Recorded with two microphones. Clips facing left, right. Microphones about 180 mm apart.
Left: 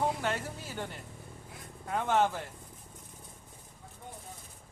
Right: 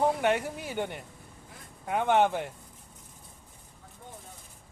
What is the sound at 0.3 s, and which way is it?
Speech, 65° right (ahead or behind).